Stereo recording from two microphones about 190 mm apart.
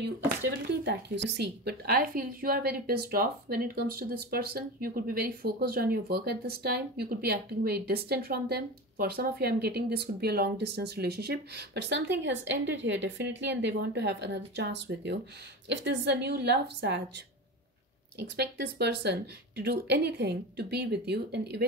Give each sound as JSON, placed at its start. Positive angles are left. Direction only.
{"t": 0.8, "sound": "a woman's voice", "side_deg": -65}
{"t": 18.2, "sound": "a woman's voice", "side_deg": -60}